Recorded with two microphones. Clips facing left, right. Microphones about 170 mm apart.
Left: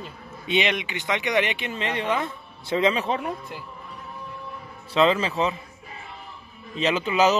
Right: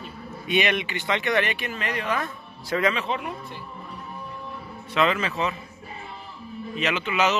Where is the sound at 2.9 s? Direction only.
35° left (ahead or behind).